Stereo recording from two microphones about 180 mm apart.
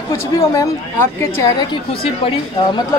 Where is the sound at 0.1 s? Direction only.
15° left (ahead or behind).